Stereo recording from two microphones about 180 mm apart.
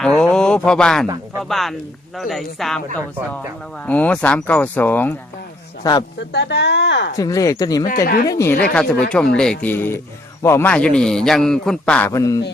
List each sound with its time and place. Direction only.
0.2 s a man's voice: 5° left (ahead or behind)
5.8 s speech: 20° left (ahead or behind)
6.3 s speech: 70° left (ahead or behind)
7.2 s speech: 20° left (ahead or behind)
8.0 s speech: 60° left (ahead or behind)
8.3 s a man's voice: 15° left (ahead or behind)